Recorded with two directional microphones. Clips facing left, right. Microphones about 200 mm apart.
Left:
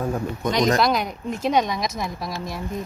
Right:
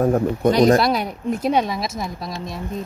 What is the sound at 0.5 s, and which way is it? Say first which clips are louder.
A woman's voice: right 5 dB; 35° right (ahead or behind).